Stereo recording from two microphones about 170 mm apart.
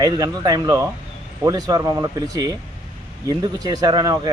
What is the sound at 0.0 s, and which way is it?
Speech, 20° right (ahead or behind).